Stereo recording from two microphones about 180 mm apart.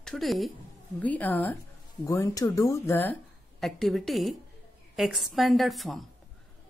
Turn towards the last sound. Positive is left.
turn(degrees=0)  # may be behind; listen again after turning